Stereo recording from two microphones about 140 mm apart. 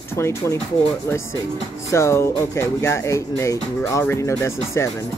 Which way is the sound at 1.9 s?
20° left (ahead or behind).